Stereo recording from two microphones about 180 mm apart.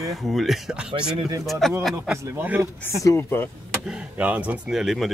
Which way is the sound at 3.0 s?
15° left (ahead or behind).